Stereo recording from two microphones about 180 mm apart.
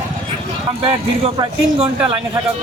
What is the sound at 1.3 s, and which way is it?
Speech, 30° right (ahead or behind).